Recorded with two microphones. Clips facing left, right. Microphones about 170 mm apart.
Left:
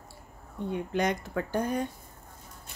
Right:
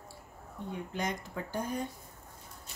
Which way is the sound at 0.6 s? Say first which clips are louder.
Left 7 dB; 70° left (ahead or behind).